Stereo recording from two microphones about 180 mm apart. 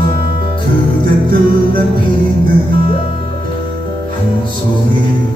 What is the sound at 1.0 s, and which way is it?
Music, 55° right (ahead or behind).